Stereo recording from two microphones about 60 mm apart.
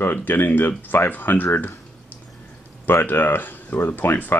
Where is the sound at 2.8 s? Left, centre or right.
Left.